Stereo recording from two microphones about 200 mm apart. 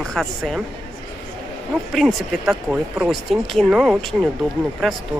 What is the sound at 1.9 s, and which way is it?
Speech, centre (ahead or behind).